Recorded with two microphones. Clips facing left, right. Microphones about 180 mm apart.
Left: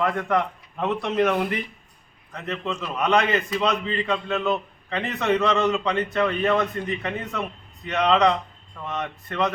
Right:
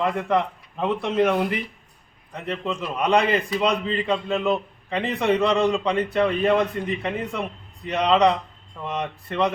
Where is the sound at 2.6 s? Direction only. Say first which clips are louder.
Right 1 dB; 10° right (ahead or behind).